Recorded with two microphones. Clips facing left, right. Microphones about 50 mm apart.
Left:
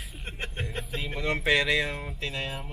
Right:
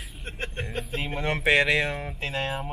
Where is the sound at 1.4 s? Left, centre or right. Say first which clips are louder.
Right 3 dB; right.